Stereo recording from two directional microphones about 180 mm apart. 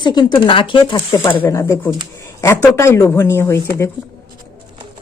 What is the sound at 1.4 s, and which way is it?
Speech, 15° left (ahead or behind).